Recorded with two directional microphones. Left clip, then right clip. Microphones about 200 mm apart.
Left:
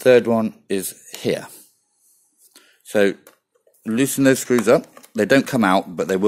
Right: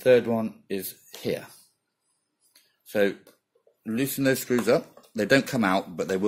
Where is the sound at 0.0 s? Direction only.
50° left (ahead or behind).